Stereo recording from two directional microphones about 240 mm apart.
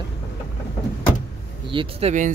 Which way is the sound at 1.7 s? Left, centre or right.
Right.